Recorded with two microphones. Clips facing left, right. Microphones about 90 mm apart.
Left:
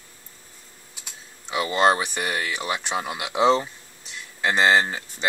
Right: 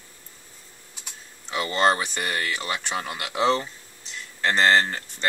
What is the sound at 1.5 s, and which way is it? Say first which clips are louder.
Speech: left 2 dB; 10° left (ahead or behind).